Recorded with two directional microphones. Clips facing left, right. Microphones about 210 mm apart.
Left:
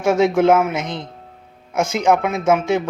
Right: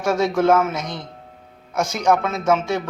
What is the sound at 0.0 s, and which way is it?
Speech, 20° left (ahead or behind).